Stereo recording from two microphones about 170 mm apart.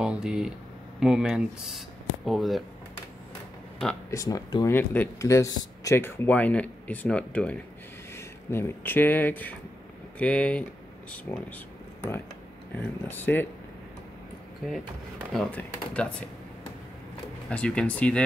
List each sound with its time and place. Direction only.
0.0 s speech: 5° right (ahead or behind)
4.1 s speech: 20° left (ahead or behind)
4.7 s speech: 10° left (ahead or behind)
12.7 s speech: 10° left (ahead or behind)
14.7 s speech: centre (ahead or behind)
17.5 s speech: 5° left (ahead or behind)